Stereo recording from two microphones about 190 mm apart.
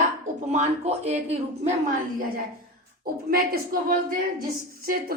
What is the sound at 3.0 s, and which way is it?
A woman's voice, 50° right (ahead or behind).